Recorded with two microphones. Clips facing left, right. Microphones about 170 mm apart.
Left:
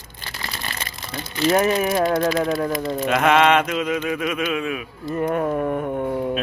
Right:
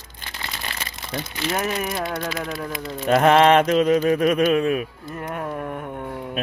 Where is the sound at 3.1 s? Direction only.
35° right (ahead or behind).